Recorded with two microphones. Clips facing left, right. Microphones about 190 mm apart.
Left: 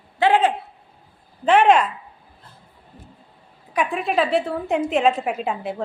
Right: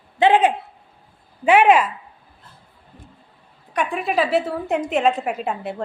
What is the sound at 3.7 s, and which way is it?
A woman's voice, centre (ahead or behind).